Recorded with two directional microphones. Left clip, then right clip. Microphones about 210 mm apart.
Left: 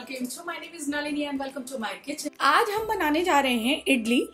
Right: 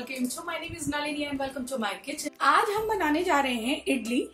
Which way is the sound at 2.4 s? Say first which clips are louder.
Left 1 dB; 45° left (ahead or behind).